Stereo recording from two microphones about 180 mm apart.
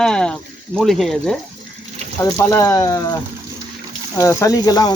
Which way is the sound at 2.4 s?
15° left (ahead or behind).